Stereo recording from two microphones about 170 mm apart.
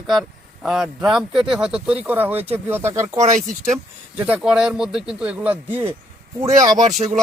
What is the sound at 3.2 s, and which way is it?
Speech, 45° right (ahead or behind).